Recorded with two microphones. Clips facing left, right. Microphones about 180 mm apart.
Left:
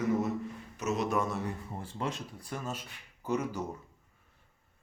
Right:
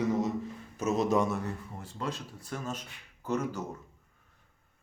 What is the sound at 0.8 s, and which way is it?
Speech, 20° right (ahead or behind).